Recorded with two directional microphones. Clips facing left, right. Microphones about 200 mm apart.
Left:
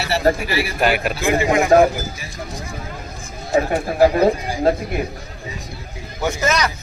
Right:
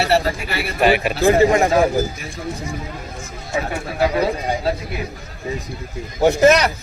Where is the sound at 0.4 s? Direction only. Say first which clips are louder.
Left 3 dB; 60° right (ahead or behind).